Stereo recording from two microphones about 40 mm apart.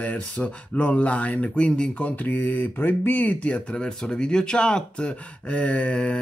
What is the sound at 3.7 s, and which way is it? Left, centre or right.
Speech, centre.